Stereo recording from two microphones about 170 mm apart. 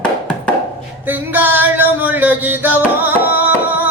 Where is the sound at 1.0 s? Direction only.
10° right (ahead or behind).